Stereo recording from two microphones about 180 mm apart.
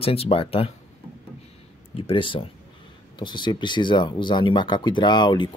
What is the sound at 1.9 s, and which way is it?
Speech, 30° left (ahead or behind).